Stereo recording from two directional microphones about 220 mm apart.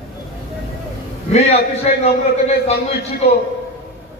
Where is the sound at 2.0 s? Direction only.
30° left (ahead or behind).